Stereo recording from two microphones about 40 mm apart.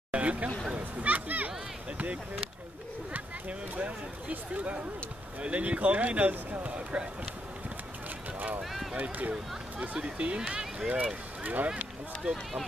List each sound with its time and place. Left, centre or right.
0.1 s chatter: right
0.7 s children playing: right
3.1 s a sound: right
5.4 s speech: right
8.9 s speech: right
10.4 s speech: centre
11.4 s speech: right
11.7 s speech: right